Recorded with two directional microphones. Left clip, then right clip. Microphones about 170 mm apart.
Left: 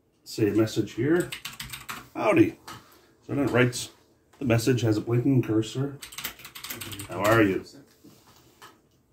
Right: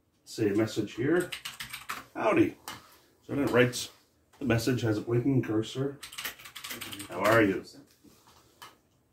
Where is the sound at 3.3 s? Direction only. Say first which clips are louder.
Left 1 dB; 10° left (ahead or behind); by 5.0 s 30° left (ahead or behind).